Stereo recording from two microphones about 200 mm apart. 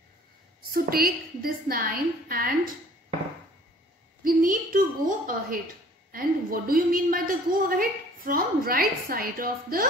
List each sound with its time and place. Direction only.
0.6 s a woman's voice: 50° right (ahead or behind)
4.2 s a woman's voice: 45° right (ahead or behind)